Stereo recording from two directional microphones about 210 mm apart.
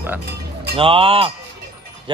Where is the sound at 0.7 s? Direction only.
25° right (ahead or behind).